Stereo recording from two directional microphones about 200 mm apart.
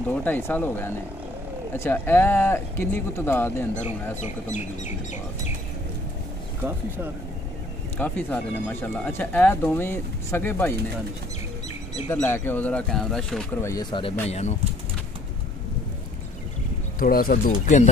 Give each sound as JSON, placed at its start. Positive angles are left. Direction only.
{"t": 0.1, "sound": "speech", "side_deg": 10}
{"t": 4.2, "sound": "speech", "side_deg": 35}
{"t": 8.0, "sound": "speech", "side_deg": 10}
{"t": 12.1, "sound": "speech", "side_deg": 10}
{"t": 13.7, "sound": "speech", "side_deg": 20}
{"t": 14.2, "sound": "speech", "side_deg": 35}
{"t": 17.0, "sound": "speech", "side_deg": 45}